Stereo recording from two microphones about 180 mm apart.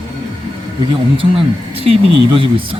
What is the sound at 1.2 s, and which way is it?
Speech, 30° right (ahead or behind).